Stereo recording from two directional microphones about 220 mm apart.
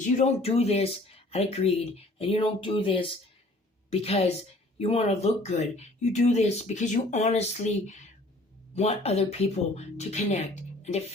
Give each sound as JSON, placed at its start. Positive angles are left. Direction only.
{"t": 0.0, "sound": "speech", "side_deg": 30}